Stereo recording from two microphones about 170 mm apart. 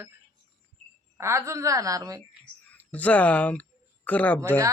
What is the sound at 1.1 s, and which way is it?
A woman's voice, 15° right (ahead or behind).